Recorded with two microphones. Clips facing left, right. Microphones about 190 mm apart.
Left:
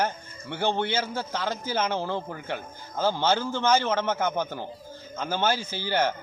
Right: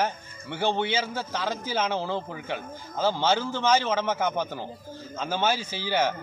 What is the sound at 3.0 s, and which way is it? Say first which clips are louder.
A man's voice: even; 10° right (ahead or behind).